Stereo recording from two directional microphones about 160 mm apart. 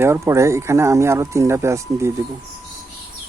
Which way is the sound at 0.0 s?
15° right (ahead or behind).